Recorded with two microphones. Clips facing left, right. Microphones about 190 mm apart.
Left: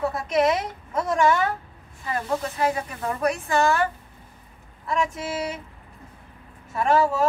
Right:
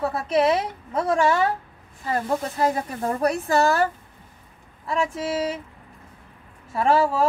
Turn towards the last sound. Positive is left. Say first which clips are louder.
# right 1 dB
turn(degrees=-30)  # may be behind; listen again after turning